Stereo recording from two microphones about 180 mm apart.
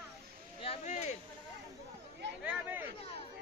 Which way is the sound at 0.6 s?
40° left (ahead or behind).